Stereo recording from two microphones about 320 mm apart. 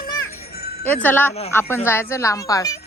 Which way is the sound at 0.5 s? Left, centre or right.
Left.